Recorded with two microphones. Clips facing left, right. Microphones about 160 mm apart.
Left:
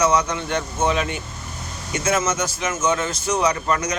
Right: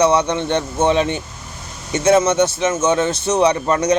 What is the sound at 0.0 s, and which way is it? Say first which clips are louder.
A man's voice: right 4 dB; 30° right (ahead or behind).